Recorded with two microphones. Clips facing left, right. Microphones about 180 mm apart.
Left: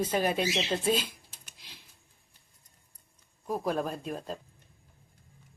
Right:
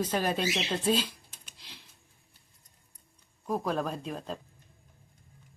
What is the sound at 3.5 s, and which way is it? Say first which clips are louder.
Speech: even; 5° left (ahead or behind).